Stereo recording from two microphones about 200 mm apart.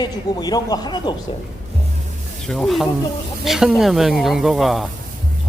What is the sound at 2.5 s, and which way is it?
Speech, centre (ahead or behind).